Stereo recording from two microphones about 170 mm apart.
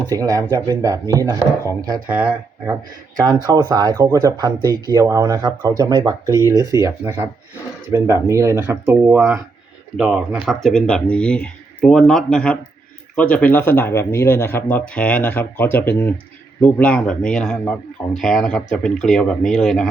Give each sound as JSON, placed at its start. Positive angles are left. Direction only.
{"t": 0.0, "sound": "speech", "side_deg": -20}
{"t": 2.0, "sound": "speech", "side_deg": -10}
{"t": 3.2, "sound": "speech", "side_deg": -25}